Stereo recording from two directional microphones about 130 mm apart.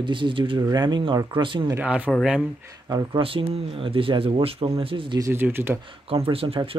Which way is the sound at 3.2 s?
45° right (ahead or behind).